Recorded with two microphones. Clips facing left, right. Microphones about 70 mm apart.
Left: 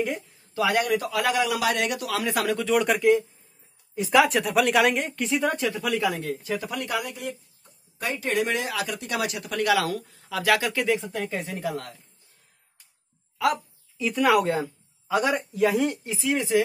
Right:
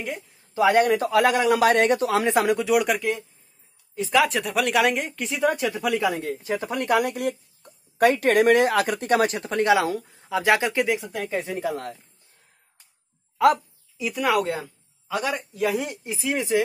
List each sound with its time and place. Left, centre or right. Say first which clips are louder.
0.6 s speech: right 5 dB; right
2.6 s speech: even; centre
5.5 s speech: right 2 dB; centre; by 6.9 s right
6.9 s speech: right 12 dB; right
13.9 s speech: left 2 dB; centre
14.2 s speech: left 2 dB; centre
15.9 s speech: left 1 dB; centre